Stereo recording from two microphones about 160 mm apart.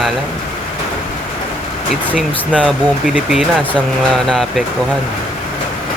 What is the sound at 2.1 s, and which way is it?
Speech, 5° right (ahead or behind).